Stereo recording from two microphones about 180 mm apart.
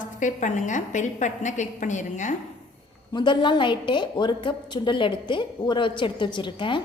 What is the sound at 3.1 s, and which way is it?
A woman's voice, 25° left (ahead or behind).